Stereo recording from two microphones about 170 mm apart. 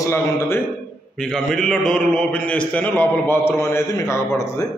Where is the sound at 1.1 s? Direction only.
5° left (ahead or behind).